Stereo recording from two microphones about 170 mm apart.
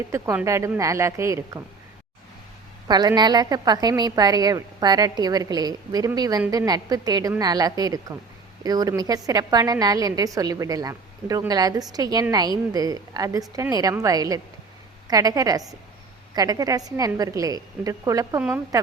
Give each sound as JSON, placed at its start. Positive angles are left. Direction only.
{"t": 0.1, "sound": "a woman's voice", "side_deg": -15}
{"t": 2.8, "sound": "a woman's voice", "side_deg": -25}